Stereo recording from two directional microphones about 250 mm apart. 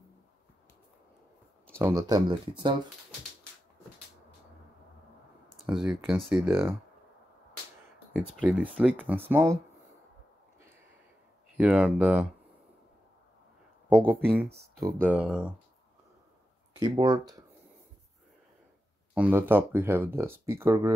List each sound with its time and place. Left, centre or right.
1.8 s speech: centre
5.7 s speech: centre
8.2 s speech: centre
11.5 s speech: centre
13.8 s speech: centre
16.8 s speech: centre
19.1 s speech: centre